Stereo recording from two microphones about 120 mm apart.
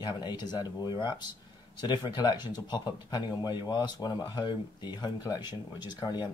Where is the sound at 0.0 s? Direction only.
35° left (ahead or behind).